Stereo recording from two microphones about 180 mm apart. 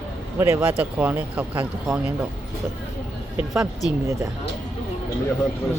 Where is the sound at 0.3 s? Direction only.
15° right (ahead or behind).